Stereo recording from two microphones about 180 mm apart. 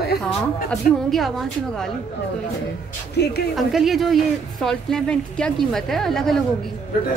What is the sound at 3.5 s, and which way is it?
Speech, centre (ahead or behind).